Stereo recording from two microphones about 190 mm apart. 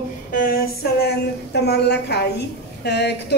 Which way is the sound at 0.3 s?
50° left (ahead or behind).